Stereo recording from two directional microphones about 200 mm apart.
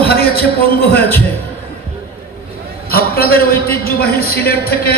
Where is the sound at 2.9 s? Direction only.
50° left (ahead or behind).